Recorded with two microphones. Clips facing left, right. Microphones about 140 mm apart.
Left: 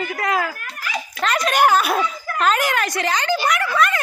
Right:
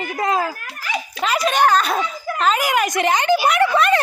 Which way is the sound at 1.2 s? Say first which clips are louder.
Even; 5° right (ahead or behind).